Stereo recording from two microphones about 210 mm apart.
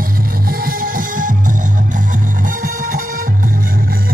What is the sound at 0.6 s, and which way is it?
Music, 40° right (ahead or behind).